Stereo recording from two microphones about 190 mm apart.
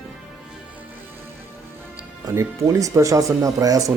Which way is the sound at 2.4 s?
15° right (ahead or behind).